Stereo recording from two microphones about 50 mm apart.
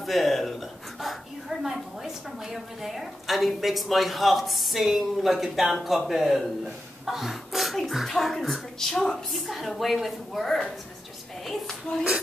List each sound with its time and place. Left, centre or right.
0.0 s a sound: centre
2.4 s a woman's voice: centre
11.9 s speech: centre